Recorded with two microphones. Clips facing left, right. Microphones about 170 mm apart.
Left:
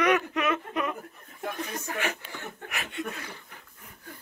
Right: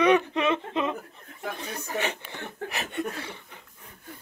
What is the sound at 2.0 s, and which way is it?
Speech, 30° right (ahead or behind).